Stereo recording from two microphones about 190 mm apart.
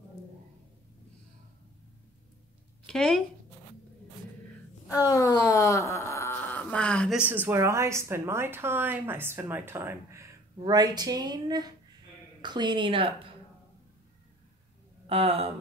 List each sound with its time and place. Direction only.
2.9 s speech: 5° left (ahead or behind)
4.8 s speech: 20° left (ahead or behind)
7.2 s a woman's voice: 10° right (ahead or behind); by 13.3 s 25° right (ahead or behind)
15.0 s a sound: 30° right (ahead or behind)